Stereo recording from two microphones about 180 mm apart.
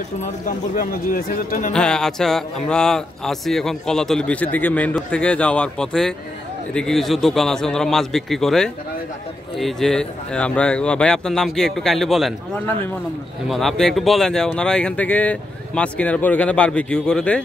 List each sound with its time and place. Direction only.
0.2 s speech: 50° left (ahead or behind)
1.7 s speech: 5° left (ahead or behind)
13.5 s speech: centre (ahead or behind)